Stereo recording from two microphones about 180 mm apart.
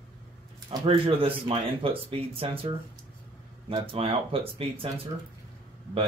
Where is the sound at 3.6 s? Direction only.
30° right (ahead or behind).